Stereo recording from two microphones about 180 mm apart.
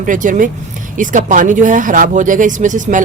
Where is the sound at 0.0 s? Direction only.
45° right (ahead or behind).